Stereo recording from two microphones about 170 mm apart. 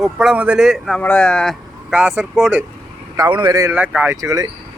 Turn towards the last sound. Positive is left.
turn(degrees=-20)  # may be behind; listen again after turning